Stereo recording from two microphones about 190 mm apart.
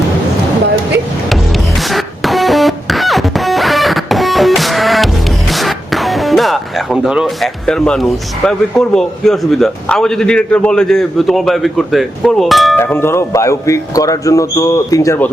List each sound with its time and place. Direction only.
1.3 s music: centre (ahead or behind)
8.4 s a man's voice: 5° left (ahead or behind)
12.8 s speech: 10° left (ahead or behind)